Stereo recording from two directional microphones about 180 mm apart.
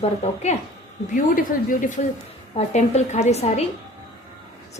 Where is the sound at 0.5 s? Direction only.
40° left (ahead or behind).